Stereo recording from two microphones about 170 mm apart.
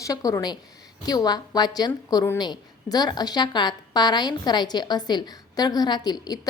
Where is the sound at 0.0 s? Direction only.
20° left (ahead or behind).